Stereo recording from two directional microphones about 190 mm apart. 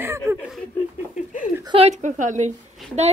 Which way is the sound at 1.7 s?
35° right (ahead or behind).